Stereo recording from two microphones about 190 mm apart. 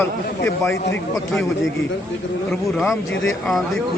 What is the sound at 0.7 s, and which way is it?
Speech, 70° left (ahead or behind).